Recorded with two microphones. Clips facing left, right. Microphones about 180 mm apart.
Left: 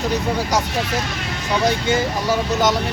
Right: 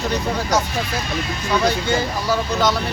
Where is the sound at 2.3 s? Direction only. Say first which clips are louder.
Left 1 dB; 20° left (ahead or behind).